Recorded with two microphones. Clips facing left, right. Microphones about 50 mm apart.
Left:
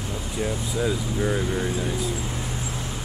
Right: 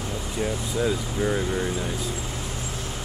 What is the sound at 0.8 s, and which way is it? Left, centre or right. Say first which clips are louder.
Vehicle: even; centre.